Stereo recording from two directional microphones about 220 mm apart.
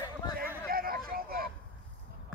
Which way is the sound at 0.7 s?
40° right (ahead or behind).